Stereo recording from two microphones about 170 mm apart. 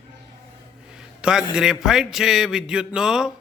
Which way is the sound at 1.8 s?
5° right (ahead or behind).